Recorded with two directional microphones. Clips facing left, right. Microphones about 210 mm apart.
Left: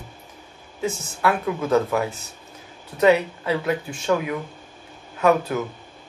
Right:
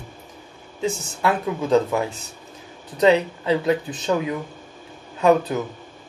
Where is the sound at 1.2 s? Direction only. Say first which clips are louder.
Even; 15° right (ahead or behind).